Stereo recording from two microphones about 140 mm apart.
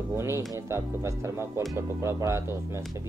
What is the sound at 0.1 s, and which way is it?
Speech, 20° right (ahead or behind).